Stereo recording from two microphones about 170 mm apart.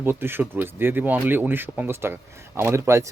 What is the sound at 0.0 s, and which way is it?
Speech, 10° right (ahead or behind).